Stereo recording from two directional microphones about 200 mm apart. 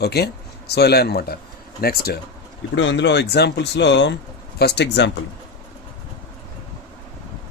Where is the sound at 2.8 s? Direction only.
60° left (ahead or behind).